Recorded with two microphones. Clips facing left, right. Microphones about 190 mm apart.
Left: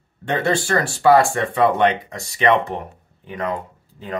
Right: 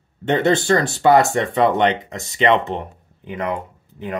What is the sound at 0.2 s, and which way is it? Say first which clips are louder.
Speech: right 4 dB; 20° right (ahead or behind).